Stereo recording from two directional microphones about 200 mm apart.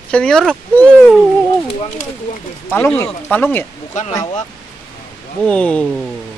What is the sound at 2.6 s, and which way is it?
Speech, 10° left (ahead or behind).